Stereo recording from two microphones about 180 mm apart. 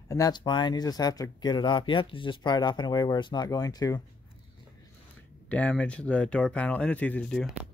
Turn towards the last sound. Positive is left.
turn(degrees=5)  # may be behind; listen again after turning